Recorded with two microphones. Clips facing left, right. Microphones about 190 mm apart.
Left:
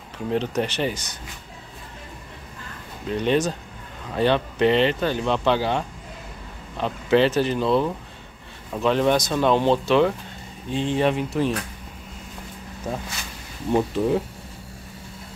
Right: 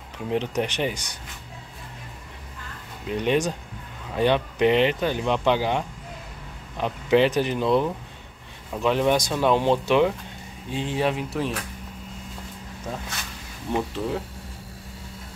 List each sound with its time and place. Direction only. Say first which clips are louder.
0.3 s speech: left 1 dB; 15° right (ahead or behind)
3.1 s speech: left 1 dB; 10° right (ahead or behind)
13.7 s speech: left 6 dB; 15° left (ahead or behind)